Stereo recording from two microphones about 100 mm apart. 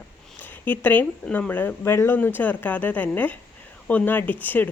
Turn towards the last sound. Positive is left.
turn(degrees=15)  # may be behind; listen again after turning